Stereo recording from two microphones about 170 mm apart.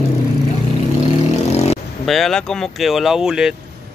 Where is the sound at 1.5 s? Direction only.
40° left (ahead or behind).